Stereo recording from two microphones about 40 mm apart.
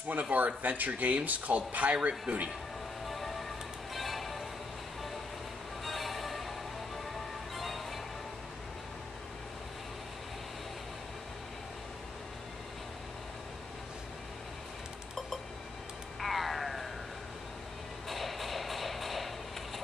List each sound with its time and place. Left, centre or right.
0.1 s speech: right
3.1 s music: centre
5.9 s music: centre
7.5 s music: centre
16.2 s a sound: centre
18.0 s music: centre